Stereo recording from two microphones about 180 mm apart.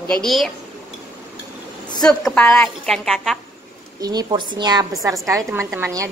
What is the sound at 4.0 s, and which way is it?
A woman's voice, 20° right (ahead or behind).